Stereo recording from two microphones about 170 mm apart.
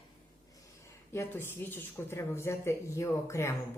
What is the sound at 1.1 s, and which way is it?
Speech, 15° left (ahead or behind).